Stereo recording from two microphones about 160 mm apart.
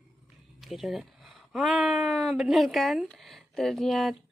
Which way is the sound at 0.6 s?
Centre (ahead or behind).